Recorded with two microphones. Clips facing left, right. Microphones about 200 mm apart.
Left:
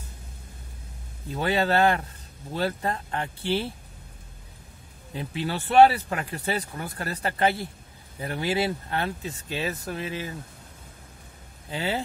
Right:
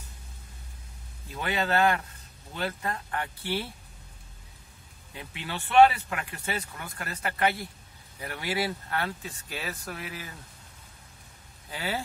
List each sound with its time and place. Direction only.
1.3 s speech: 30° left (ahead or behind)
5.1 s speech: 35° left (ahead or behind)
11.7 s speech: 25° left (ahead or behind)